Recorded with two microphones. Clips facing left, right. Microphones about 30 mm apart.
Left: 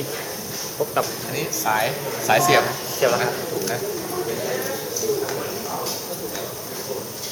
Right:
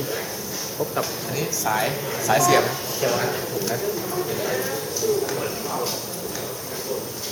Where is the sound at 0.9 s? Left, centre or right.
Centre.